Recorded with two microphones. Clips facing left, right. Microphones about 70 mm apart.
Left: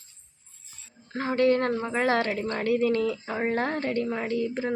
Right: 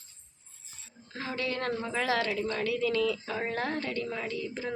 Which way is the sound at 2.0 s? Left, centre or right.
Left.